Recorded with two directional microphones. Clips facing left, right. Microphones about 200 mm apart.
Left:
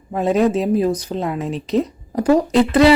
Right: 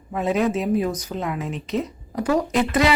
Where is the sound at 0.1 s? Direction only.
35° left (ahead or behind).